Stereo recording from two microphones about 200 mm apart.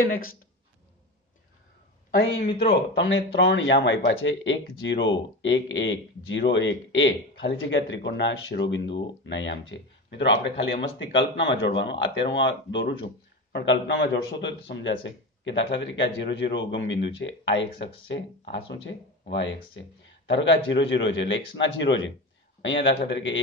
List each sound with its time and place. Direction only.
0.0 s speech: 45° left (ahead or behind)
2.4 s speech: 25° left (ahead or behind)
2.9 s speech: 65° left (ahead or behind)